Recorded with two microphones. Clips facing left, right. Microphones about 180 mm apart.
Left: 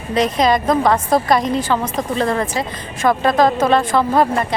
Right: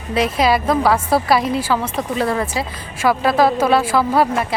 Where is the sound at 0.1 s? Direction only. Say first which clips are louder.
Left 1 dB; 5° right (ahead or behind).